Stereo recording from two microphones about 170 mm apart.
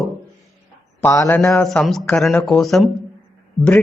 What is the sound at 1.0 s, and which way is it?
Speech, 15° left (ahead or behind).